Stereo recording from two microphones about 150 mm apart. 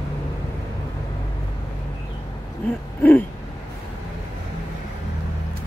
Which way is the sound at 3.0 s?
10° left (ahead or behind).